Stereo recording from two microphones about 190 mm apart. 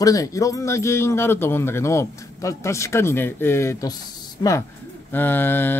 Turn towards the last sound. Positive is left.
turn(degrees=10)  # may be behind; listen again after turning